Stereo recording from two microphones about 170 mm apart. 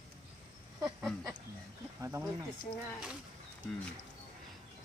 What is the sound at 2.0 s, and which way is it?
Speech, 20° right (ahead or behind).